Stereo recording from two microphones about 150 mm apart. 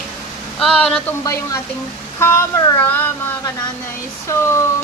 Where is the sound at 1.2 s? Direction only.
25° left (ahead or behind).